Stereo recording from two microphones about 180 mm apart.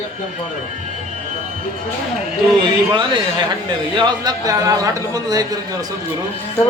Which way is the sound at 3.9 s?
25° right (ahead or behind).